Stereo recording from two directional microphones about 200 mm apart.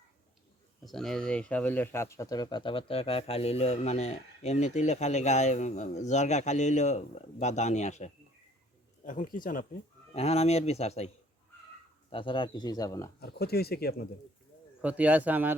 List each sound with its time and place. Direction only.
0.9 s speech: centre (ahead or behind); by 9.6 s 45° left (ahead or behind)
10.2 s speech: 30° left (ahead or behind)
12.1 s speech: 25° left (ahead or behind)
13.1 s speech: 55° left (ahead or behind)
14.8 s a man's voice: 5° right (ahead or behind)